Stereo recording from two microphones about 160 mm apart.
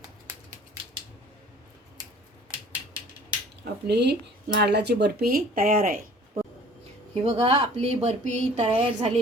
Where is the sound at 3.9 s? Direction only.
90° right; by 6.0 s 65° right (ahead or behind).